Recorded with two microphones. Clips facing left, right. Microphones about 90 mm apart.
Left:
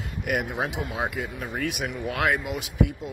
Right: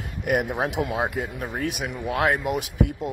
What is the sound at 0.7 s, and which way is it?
Speech, 70° right (ahead or behind).